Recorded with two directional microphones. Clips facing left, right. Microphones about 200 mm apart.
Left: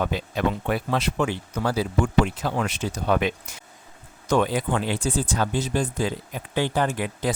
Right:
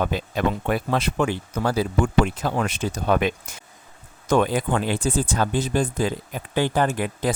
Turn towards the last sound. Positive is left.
turn(degrees=-50)  # may be behind; listen again after turning